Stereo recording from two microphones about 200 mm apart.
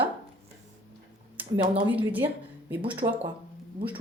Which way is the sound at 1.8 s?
10° right (ahead or behind).